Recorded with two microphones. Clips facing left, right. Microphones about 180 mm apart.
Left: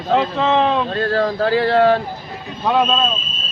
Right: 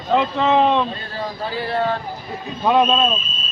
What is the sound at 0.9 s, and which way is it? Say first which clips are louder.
Speech: left 10 dB; 90° left.